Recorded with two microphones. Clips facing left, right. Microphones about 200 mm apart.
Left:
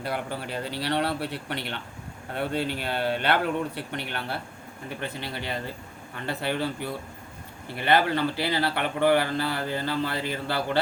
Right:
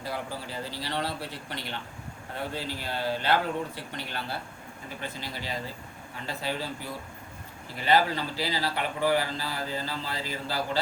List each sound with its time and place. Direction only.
0.0 s speech: 65° left (ahead or behind)